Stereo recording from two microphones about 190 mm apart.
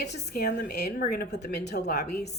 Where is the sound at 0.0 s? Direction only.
60° left (ahead or behind).